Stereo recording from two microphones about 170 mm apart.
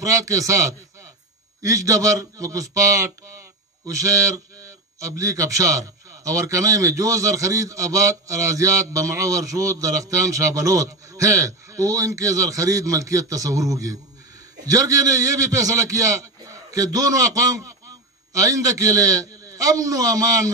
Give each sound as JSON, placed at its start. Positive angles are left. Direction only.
{"t": 0.0, "sound": "a man's voice", "side_deg": -20}